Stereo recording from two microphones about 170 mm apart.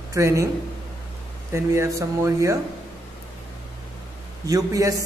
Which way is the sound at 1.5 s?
15° right (ahead or behind).